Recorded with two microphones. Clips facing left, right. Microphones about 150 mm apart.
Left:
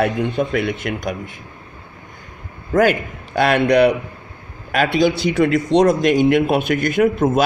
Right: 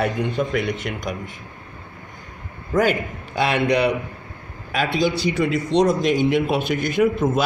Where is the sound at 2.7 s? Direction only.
50° left (ahead or behind).